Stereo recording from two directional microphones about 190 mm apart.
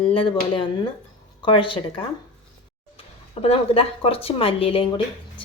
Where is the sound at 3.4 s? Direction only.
30° left (ahead or behind).